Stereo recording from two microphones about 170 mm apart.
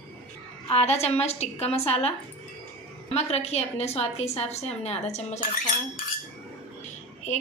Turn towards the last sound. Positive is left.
turn(degrees=45)  # may be behind; listen again after turning